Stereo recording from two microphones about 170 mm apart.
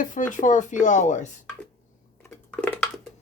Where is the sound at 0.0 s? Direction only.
50° left (ahead or behind).